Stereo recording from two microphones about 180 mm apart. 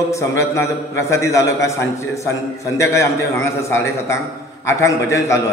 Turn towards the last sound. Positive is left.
turn(degrees=15)  # may be behind; listen again after turning